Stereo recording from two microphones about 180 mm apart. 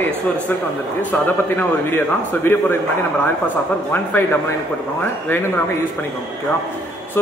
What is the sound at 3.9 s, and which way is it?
Speech, 10° left (ahead or behind).